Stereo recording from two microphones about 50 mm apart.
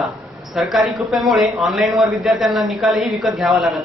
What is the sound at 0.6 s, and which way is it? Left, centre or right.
A man's voice, centre.